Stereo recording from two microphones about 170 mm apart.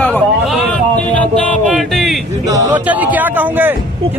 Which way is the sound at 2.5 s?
20° right (ahead or behind).